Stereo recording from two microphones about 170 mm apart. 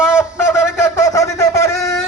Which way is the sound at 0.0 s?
5° right (ahead or behind).